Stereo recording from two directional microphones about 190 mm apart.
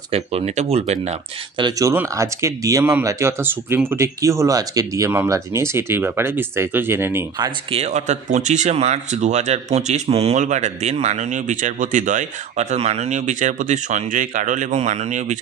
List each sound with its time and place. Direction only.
0.1 s speech: 30° right (ahead or behind)
1.6 s speech: 15° right (ahead or behind)
7.7 s speech: 35° right (ahead or behind)